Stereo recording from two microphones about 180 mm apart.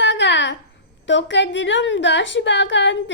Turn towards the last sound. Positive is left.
turn(degrees=85)